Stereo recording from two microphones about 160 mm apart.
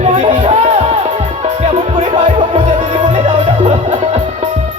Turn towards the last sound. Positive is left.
turn(degrees=-45)  # may be behind; listen again after turning